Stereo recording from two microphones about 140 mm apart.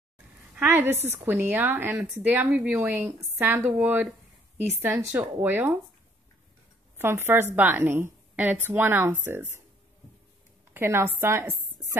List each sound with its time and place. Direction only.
0.6 s a woman's voice: 15° right (ahead or behind)
7.0 s a woman's voice: 15° right (ahead or behind)
10.7 s a woman's voice: 15° right (ahead or behind)